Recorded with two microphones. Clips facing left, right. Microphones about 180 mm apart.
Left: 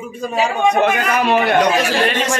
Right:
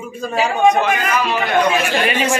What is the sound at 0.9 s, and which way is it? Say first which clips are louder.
Speech: left 3 dB; 55° left (ahead or behind).